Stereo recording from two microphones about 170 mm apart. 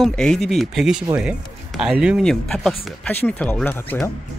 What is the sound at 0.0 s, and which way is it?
Speech, 5° left (ahead or behind).